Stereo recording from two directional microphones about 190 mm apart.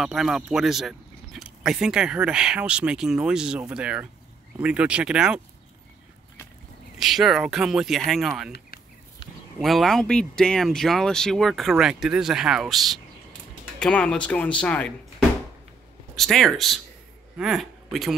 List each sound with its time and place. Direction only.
0.0 s speech: centre (ahead or behind)
7.0 s speech: centre (ahead or behind)
8.5 s a sound: 55° left (ahead or behind)
9.6 s speech: centre (ahead or behind)
16.2 s speech: centre (ahead or behind)